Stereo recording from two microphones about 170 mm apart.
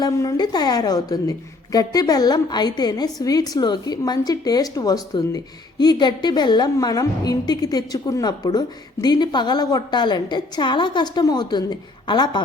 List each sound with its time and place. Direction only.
0.0 s a woman's voice: 20° left (ahead or behind)